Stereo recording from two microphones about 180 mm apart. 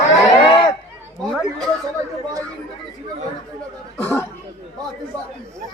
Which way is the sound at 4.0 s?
15° left (ahead or behind).